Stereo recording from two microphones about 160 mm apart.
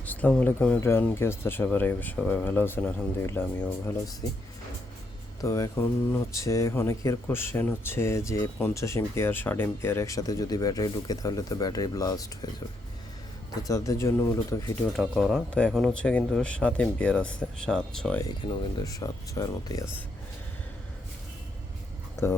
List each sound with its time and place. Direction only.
0.0 s speech: 10° left (ahead or behind)
4.2 s speech: 25° left (ahead or behind)
5.4 s speech: 20° left (ahead or behind)
13.6 s speech: 20° left (ahead or behind)
14.9 s speech: centre (ahead or behind)
18.5 s speech: 20° left (ahead or behind)